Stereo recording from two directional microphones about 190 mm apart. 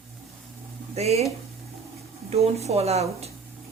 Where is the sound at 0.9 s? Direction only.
35° right (ahead or behind).